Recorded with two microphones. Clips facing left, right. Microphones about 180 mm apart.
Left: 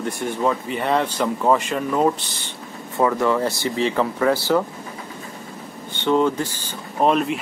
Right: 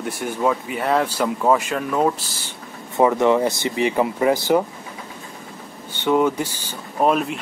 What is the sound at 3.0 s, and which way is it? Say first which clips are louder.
Speech: right 3 dB; 20° right (ahead or behind).